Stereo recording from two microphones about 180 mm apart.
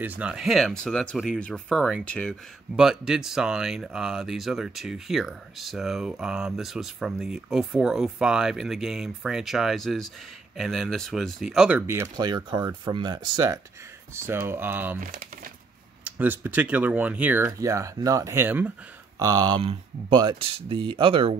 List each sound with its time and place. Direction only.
0.0 s speech: 10° right (ahead or behind)
11.8 s speech: 15° right (ahead or behind)
16.0 s speech: 10° right (ahead or behind); by 21.4 s 30° right (ahead or behind)